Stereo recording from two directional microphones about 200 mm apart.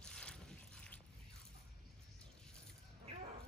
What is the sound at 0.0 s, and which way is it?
Boat, 5° left (ahead or behind).